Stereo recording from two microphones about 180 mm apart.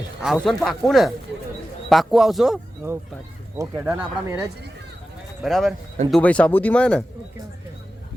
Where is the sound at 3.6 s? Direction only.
10° right (ahead or behind).